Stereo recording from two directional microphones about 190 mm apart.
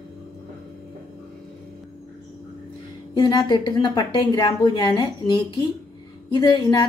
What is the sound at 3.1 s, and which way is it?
A woman's voice, 20° left (ahead or behind).